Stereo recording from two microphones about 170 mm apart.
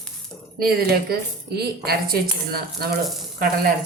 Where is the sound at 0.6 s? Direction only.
60° right (ahead or behind).